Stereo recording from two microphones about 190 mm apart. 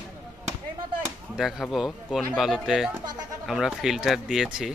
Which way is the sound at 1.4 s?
Centre (ahead or behind).